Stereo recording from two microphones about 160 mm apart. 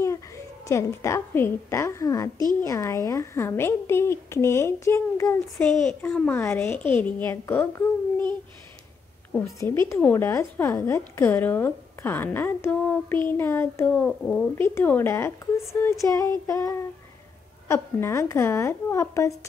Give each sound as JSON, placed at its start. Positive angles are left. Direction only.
{"t": 0.7, "sound": "a woman's voice", "side_deg": 20}
{"t": 5.6, "sound": "a child's voice", "side_deg": 5}
{"t": 9.6, "sound": "a woman's voice", "side_deg": 15}
{"t": 14.5, "sound": "a woman's voice", "side_deg": 15}